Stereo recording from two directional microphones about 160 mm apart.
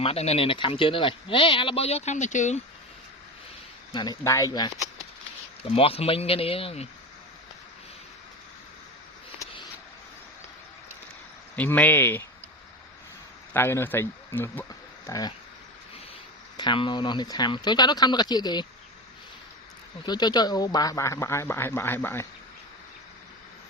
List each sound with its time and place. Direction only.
0.0 s speech: 40° left (ahead or behind)
3.9 s speech: 25° left (ahead or behind)
5.7 s speech: 35° left (ahead or behind)
11.5 s speech: 10° left (ahead or behind)
13.5 s speech: 15° left (ahead or behind)
16.6 s speech: 30° left (ahead or behind)
20.1 s speech: 25° left (ahead or behind)